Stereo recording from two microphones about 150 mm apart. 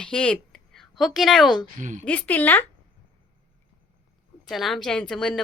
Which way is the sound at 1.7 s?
55° right (ahead or behind).